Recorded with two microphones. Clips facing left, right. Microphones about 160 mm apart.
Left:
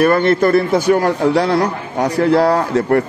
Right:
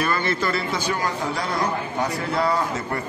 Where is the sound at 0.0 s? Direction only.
60° left (ahead or behind).